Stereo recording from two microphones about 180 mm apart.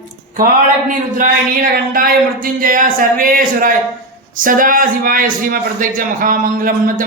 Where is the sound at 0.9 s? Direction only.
45° right (ahead or behind).